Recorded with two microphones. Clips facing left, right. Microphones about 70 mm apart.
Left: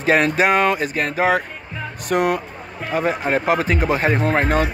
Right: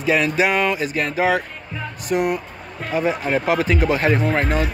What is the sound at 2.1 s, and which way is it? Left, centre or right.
Speech, left.